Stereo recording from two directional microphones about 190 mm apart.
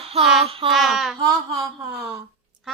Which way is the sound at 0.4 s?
30° right (ahead or behind).